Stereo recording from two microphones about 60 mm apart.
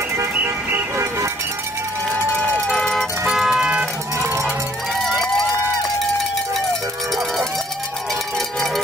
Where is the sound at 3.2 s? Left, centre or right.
Centre.